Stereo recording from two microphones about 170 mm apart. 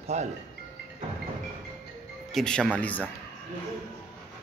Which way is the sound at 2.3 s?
5° left (ahead or behind).